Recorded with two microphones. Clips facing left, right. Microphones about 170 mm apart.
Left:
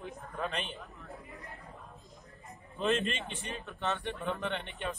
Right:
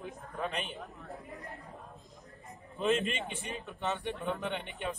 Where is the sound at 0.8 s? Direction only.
40° right (ahead or behind).